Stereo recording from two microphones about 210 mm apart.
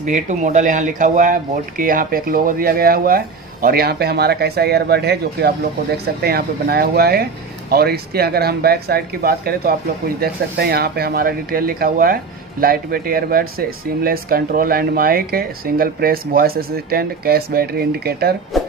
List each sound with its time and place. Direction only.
0.0 s speech: 35° right (ahead or behind)
18.5 s music: centre (ahead or behind)